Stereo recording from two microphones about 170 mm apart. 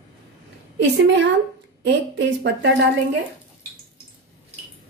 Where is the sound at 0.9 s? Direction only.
90° right.